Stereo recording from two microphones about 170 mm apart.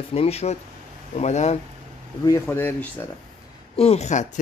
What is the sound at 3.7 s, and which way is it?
Speech, 35° left (ahead or behind).